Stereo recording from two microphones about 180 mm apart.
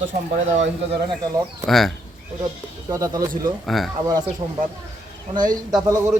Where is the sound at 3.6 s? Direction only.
Centre (ahead or behind).